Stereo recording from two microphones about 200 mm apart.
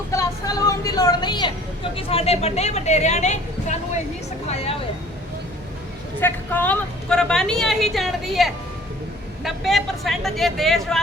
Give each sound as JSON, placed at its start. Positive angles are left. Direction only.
{"t": 0.1, "sound": "a woman's voice", "side_deg": 15}
{"t": 6.1, "sound": "a woman's voice", "side_deg": 10}